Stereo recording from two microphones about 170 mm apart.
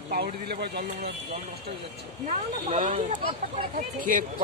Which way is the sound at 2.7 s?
45° right (ahead or behind).